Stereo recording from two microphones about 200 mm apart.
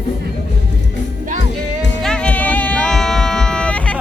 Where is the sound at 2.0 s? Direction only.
5° left (ahead or behind).